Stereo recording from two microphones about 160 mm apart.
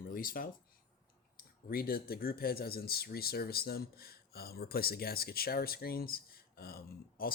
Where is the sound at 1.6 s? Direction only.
70° left (ahead or behind).